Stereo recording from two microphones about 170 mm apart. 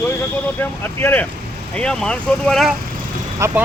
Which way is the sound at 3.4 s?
15° right (ahead or behind).